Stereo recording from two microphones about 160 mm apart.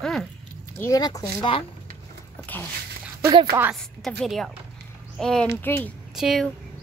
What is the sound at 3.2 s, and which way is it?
Speech, 25° right (ahead or behind).